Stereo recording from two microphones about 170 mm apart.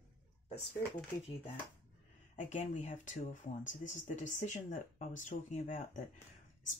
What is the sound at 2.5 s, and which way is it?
Speech, 45° left (ahead or behind).